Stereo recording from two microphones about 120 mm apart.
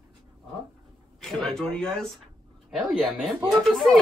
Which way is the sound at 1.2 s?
5° left (ahead or behind).